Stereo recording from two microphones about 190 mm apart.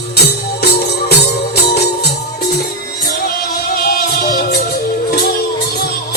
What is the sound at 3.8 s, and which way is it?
Music, 55° left (ahead or behind).